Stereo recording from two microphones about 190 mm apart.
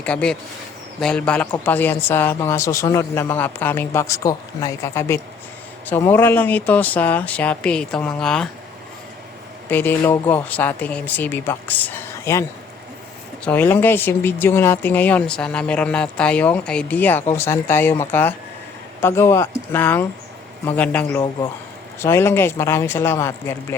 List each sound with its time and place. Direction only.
0.0 s speech: 5° left (ahead or behind)
9.6 s speech: 10° left (ahead or behind)